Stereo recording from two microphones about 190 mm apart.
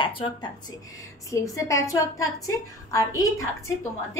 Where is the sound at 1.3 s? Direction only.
15° left (ahead or behind).